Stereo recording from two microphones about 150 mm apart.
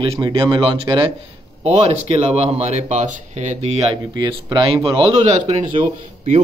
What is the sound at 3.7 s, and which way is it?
A man's voice, 30° right (ahead or behind).